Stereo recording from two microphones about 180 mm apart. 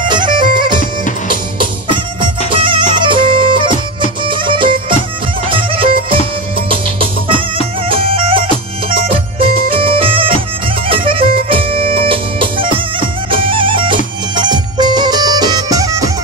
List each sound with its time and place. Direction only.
0.1 s music: 25° right (ahead or behind)
2.1 s music: 30° right (ahead or behind)